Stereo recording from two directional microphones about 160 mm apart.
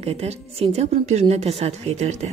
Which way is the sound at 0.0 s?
40° right (ahead or behind).